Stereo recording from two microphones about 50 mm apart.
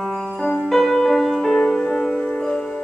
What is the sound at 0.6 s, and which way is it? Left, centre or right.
Music, centre.